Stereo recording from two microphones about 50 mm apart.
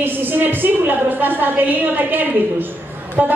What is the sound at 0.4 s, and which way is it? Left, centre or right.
A woman's voice, right.